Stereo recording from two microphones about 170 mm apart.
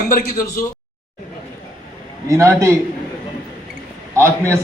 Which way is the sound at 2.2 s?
20° right (ahead or behind).